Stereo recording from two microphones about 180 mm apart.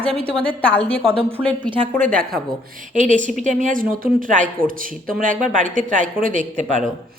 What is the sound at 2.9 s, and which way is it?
Speech, 45° right (ahead or behind).